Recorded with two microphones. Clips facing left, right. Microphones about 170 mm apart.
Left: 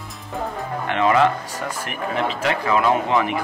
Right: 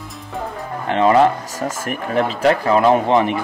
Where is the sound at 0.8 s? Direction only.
35° right (ahead or behind).